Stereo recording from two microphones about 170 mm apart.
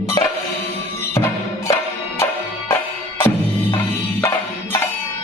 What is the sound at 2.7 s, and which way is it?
Music, 10° left (ahead or behind).